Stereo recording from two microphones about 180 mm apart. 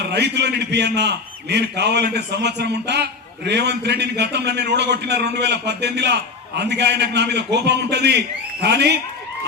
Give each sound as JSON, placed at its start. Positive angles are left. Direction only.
{"t": 0.0, "sound": "a man's voice", "side_deg": -65}